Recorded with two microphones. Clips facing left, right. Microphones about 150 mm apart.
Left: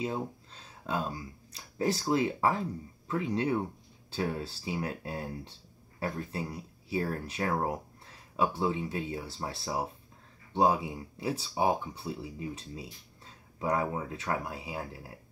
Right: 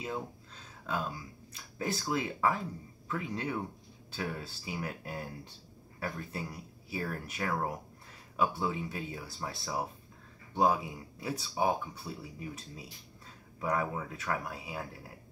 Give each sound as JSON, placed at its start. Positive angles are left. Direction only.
{"t": 0.8, "sound": "speech", "side_deg": 30}